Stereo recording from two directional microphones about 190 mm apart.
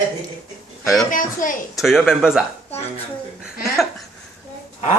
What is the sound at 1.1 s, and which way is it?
Speech, 45° left (ahead or behind).